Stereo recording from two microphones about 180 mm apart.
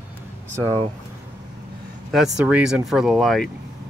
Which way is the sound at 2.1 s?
5° right (ahead or behind).